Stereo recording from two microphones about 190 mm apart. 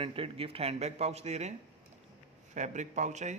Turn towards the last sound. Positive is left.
turn(degrees=-40)  # may be behind; listen again after turning